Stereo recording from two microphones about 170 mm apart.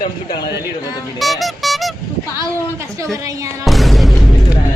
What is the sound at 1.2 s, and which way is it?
Music, centre (ahead or behind).